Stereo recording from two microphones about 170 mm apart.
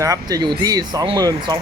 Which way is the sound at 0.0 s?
20° right (ahead or behind).